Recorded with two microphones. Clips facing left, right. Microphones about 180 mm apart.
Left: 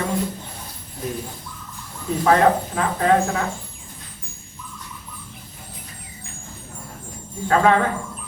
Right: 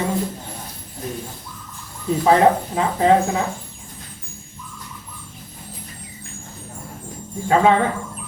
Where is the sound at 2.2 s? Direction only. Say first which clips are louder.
Right 1 dB; 20° right (ahead or behind).